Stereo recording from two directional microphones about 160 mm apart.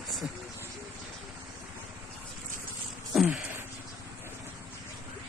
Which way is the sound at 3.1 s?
Centre (ahead or behind).